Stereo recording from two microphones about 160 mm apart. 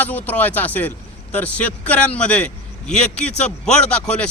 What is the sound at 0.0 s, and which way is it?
A man's voice, 10° left (ahead or behind).